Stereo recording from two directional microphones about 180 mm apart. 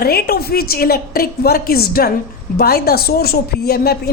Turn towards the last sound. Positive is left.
turn(degrees=60)  # may be behind; listen again after turning